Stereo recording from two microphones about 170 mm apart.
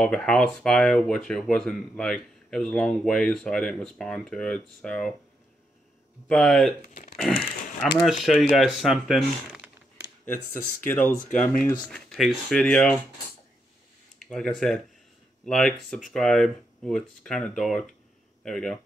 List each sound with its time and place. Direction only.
0.0 s speech: 5° left (ahead or behind)
6.2 s speech: centre (ahead or behind)
6.9 s a sound: 40° left (ahead or behind)
7.2 s a sound: centre (ahead or behind)
8.0 s speech: centre (ahead or behind)
10.2 s speech: 10° left (ahead or behind)
14.2 s speech: 5° left (ahead or behind)